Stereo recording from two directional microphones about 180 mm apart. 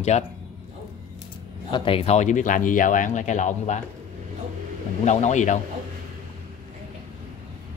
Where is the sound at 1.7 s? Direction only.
30° left (ahead or behind).